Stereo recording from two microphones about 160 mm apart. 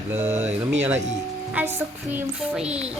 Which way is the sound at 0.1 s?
15° right (ahead or behind).